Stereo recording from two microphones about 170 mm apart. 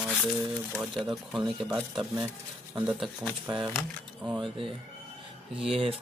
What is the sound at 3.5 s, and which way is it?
Speech, 30° right (ahead or behind).